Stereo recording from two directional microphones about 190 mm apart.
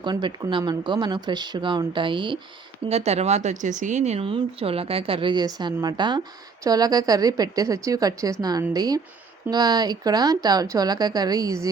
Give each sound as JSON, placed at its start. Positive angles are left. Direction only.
{"t": 0.0, "sound": "speech", "side_deg": -25}